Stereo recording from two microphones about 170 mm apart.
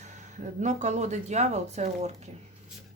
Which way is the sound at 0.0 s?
45° right (ahead or behind).